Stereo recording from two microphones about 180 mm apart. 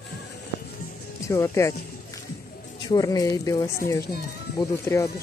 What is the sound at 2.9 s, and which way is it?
Speech, 20° left (ahead or behind).